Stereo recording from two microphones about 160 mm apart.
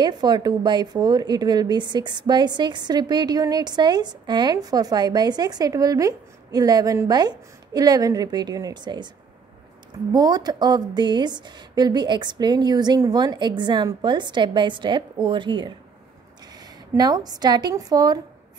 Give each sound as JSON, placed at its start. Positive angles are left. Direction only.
{"t": 0.0, "sound": "a woman's voice", "side_deg": -25}
{"t": 10.1, "sound": "a woman's voice", "side_deg": -25}